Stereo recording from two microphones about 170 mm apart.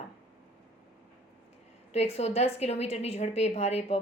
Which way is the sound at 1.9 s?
40° left (ahead or behind).